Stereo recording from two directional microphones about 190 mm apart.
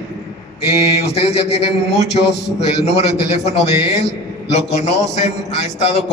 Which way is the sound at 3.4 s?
35° left (ahead or behind).